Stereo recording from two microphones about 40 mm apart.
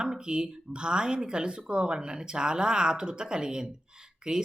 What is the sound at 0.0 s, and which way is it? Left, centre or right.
Speech, right.